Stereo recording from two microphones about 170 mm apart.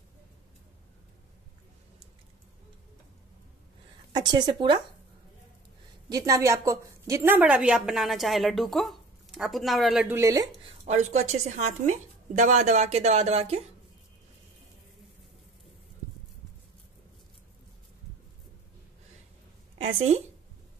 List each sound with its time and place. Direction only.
4.1 s a woman's voice: 25° right (ahead or behind)
6.0 s a woman's voice: 20° right (ahead or behind); by 10.0 s centre (ahead or behind)
10.0 s speech: 15° right (ahead or behind)
10.7 s a woman's voice: 45° right (ahead or behind)